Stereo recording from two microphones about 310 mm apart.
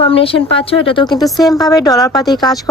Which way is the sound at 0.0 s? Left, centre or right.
Centre.